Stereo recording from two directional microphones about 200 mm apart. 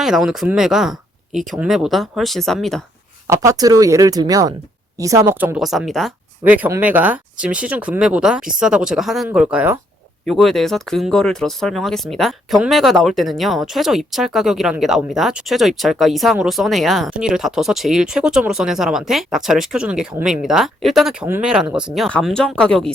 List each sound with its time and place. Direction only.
0.0 s speech: centre (ahead or behind)
3.2 s speech: 15° right (ahead or behind); by 22.9 s 5° left (ahead or behind)